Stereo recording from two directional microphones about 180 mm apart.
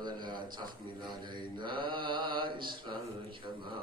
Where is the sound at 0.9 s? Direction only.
25° right (ahead or behind).